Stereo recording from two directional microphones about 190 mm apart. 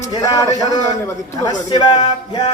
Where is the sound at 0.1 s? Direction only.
20° left (ahead or behind).